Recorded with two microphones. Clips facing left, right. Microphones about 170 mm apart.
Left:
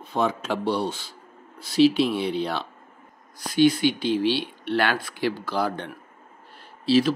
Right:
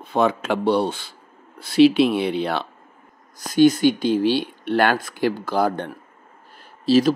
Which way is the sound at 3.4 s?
45° right (ahead or behind).